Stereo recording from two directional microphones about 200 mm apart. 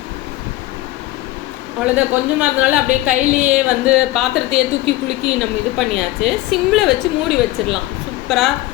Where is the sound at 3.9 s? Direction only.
5° right (ahead or behind).